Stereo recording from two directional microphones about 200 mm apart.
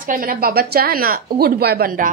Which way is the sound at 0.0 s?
45° right (ahead or behind).